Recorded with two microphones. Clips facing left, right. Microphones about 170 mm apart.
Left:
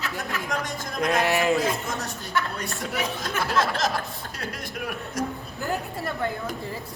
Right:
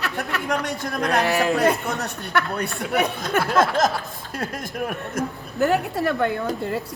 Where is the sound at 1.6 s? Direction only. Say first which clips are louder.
Right 6 dB; 65° right (ahead or behind).